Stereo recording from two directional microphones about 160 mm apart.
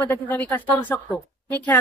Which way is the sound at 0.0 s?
10° left (ahead or behind).